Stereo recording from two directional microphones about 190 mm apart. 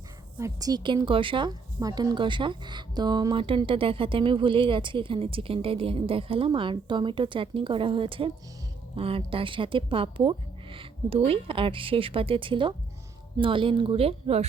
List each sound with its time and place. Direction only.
0.3 s a woman's voice: 15° right (ahead or behind); by 14.4 s 35° right (ahead or behind)